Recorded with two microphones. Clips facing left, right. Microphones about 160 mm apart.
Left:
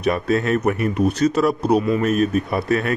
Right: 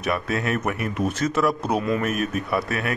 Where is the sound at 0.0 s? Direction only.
30° left (ahead or behind).